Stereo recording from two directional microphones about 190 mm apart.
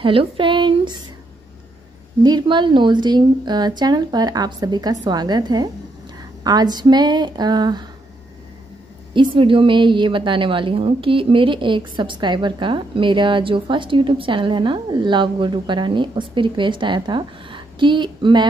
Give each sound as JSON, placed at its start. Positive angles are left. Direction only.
{"t": 0.0, "sound": "speech", "side_deg": -25}
{"t": 2.2, "sound": "a woman's voice", "side_deg": -25}
{"t": 9.1, "sound": "a woman's voice", "side_deg": -25}